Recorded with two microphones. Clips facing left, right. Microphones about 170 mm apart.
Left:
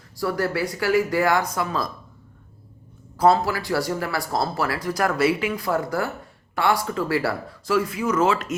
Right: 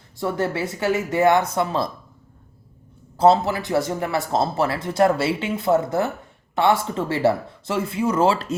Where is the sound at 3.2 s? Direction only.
25° right (ahead or behind).